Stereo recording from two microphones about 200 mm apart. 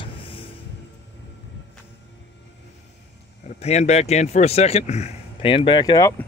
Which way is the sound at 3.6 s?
35° left (ahead or behind).